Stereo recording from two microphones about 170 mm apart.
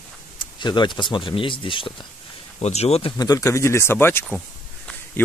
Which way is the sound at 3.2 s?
20° left (ahead or behind).